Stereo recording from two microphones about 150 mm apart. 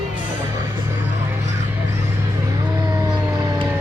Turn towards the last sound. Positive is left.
turn(degrees=-25)  # may be behind; listen again after turning